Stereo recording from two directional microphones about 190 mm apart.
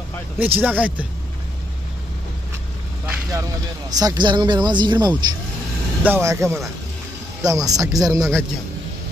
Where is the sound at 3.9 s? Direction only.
20° right (ahead or behind).